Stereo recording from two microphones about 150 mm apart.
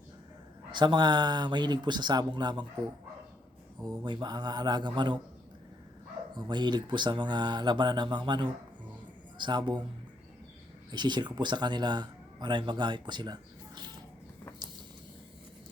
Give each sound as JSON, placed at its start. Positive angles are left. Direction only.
{"t": 0.7, "sound": "speech", "side_deg": -30}
{"t": 3.8, "sound": "speech", "side_deg": -30}
{"t": 6.3, "sound": "a man's voice", "side_deg": -30}
{"t": 10.9, "sound": "speech", "side_deg": -30}